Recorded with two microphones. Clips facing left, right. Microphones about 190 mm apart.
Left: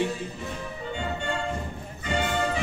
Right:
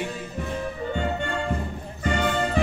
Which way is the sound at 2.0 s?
55° right (ahead or behind).